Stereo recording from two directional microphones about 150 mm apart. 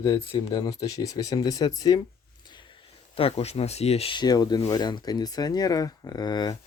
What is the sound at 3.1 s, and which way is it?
Speech, 40° left (ahead or behind).